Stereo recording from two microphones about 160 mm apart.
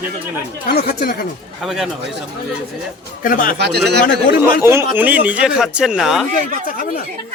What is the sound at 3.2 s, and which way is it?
Speech, 60° left (ahead or behind).